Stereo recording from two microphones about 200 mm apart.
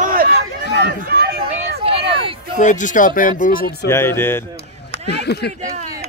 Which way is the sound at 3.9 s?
10° left (ahead or behind).